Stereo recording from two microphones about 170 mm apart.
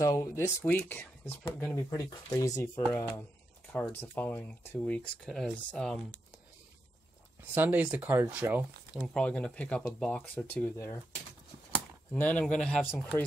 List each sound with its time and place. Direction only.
0.0 s speech: 20° left (ahead or behind)
7.5 s speech: 10° right (ahead or behind); by 11.0 s 10° left (ahead or behind)
12.1 s speech: 10° left (ahead or behind)